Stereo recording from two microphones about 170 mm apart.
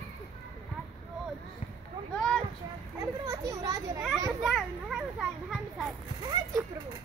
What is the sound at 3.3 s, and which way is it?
Children playing, 20° right (ahead or behind).